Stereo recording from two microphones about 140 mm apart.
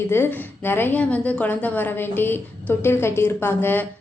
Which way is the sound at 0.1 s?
15° left (ahead or behind).